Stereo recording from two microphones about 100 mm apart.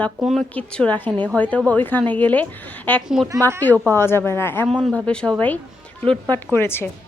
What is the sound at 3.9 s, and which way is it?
Speech, 25° left (ahead or behind).